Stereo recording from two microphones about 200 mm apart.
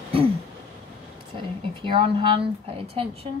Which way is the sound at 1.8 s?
25° right (ahead or behind).